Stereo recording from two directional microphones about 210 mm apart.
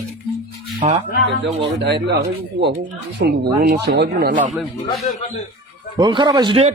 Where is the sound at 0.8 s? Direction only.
35° right (ahead or behind).